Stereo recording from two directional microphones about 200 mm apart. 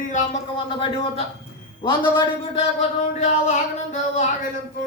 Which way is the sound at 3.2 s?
35° left (ahead or behind).